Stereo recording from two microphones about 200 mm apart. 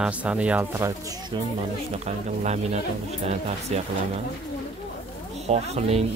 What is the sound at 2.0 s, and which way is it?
Speech, 35° right (ahead or behind).